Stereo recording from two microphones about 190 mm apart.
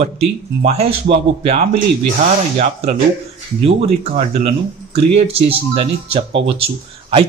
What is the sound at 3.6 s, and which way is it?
Speech, 30° right (ahead or behind).